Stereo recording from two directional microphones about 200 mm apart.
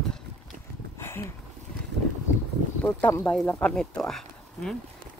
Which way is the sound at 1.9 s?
55° right (ahead or behind).